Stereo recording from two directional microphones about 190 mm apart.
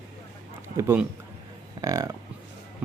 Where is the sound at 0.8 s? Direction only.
15° right (ahead or behind).